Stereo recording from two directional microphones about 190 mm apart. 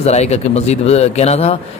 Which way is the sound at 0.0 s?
35° left (ahead or behind).